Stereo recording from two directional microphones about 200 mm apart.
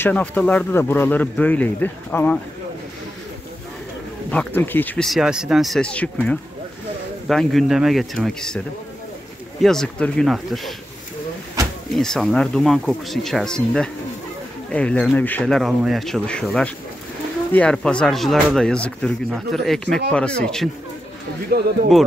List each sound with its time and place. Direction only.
0.0 s speech: 5° left (ahead or behind)
4.3 s speech: 10° left (ahead or behind)
7.2 s speech: centre (ahead or behind)
9.6 s speech: centre (ahead or behind)
12.0 s speech: centre (ahead or behind)
21.5 s speech: 50° right (ahead or behind)